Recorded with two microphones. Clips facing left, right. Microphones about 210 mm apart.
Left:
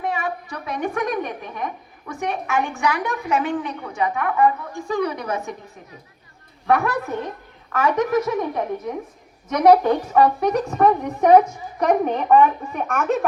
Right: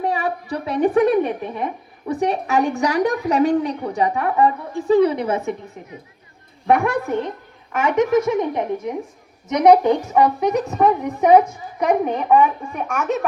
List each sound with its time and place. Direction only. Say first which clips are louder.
0.0 s a woman's voice: right 3 dB; 35° right (ahead or behind); by 13.1 s 10° right (ahead or behind)